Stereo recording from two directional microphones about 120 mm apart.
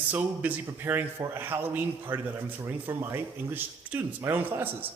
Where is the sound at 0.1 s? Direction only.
15° right (ahead or behind).